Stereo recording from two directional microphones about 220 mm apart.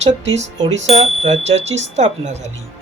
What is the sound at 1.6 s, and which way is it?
Speech, 55° right (ahead or behind).